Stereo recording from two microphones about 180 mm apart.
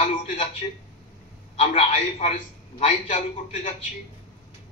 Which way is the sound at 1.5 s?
35° left (ahead or behind).